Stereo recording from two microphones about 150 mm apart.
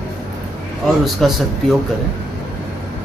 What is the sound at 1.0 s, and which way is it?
Speech, centre (ahead or behind).